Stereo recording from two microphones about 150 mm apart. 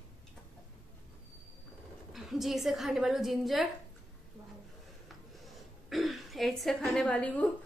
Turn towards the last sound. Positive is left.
turn(degrees=10)  # may be behind; listen again after turning